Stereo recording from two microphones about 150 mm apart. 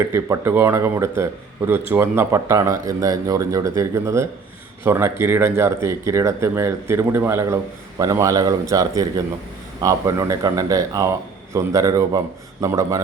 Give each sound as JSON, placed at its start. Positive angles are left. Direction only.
{"t": 0.1, "sound": "speech", "side_deg": -15}